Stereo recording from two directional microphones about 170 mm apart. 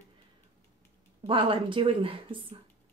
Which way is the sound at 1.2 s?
30° right (ahead or behind).